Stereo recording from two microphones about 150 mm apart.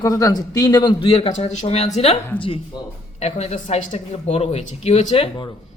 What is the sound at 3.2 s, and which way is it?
Speech, 50° left (ahead or behind).